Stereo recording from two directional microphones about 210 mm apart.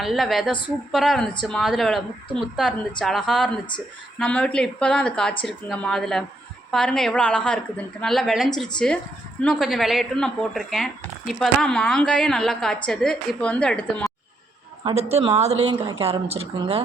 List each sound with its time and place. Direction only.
0.0 s speech: centre (ahead or behind)
14.8 s a woman's voice: 25° right (ahead or behind)